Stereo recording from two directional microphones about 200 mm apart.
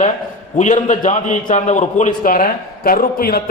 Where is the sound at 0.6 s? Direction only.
40° left (ahead or behind).